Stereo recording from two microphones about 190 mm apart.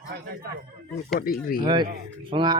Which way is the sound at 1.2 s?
50° left (ahead or behind).